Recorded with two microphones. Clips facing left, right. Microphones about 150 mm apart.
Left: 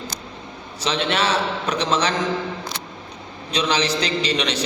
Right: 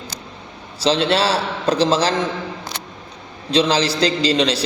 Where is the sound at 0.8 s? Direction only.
30° right (ahead or behind).